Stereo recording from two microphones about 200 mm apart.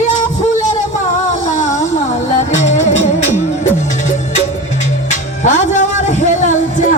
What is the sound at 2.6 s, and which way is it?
Music, 35° left (ahead or behind).